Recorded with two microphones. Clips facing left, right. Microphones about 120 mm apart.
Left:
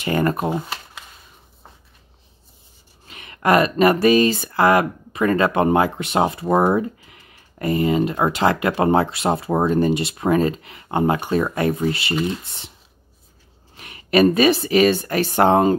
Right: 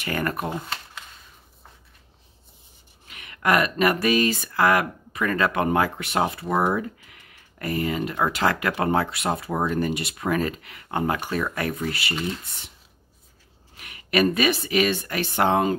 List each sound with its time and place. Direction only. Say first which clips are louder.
0.0 s speech: left 7 dB; 25° left (ahead or behind)
3.1 s speech: left 5 dB; 30° left (ahead or behind)
13.7 s speech: left 6 dB; 30° left (ahead or behind)